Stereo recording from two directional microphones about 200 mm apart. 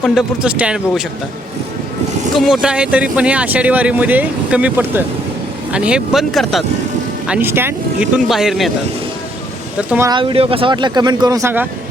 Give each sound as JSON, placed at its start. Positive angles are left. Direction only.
{"t": 0.0, "sound": "speech", "side_deg": 0}
{"t": 2.3, "sound": "speech", "side_deg": 0}
{"t": 9.7, "sound": "speech", "side_deg": -5}
{"t": 10.1, "sound": "speech", "side_deg": -25}